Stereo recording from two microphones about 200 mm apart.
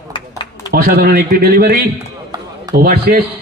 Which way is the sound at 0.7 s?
50° right (ahead or behind).